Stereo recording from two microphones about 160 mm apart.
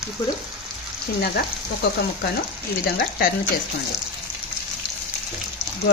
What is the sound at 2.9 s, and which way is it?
Speech, 70° left (ahead or behind).